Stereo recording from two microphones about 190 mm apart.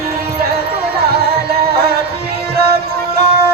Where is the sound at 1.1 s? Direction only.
55° right (ahead or behind).